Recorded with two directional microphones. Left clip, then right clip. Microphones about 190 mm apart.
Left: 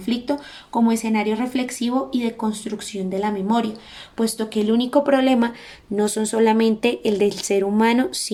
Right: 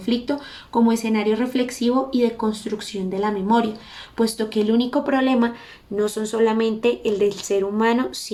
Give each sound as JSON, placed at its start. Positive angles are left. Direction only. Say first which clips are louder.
{"t": 0.0, "sound": "speech", "louder": "even", "side_deg": 10}
{"t": 6.0, "sound": "speech", "louder": "left 1 dB", "side_deg": 35}